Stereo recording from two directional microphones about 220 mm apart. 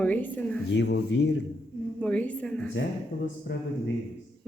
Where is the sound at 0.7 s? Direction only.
50° left (ahead or behind).